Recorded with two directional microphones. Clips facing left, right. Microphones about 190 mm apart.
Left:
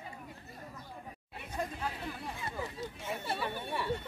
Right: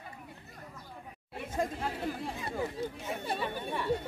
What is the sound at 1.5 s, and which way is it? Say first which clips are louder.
Chatter: right 4 dB; 45° right (ahead or behind).